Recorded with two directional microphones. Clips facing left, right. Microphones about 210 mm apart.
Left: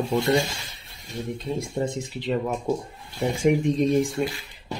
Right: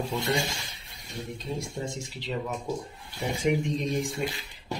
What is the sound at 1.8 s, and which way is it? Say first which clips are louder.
Speech: left 7 dB; 55° left (ahead or behind).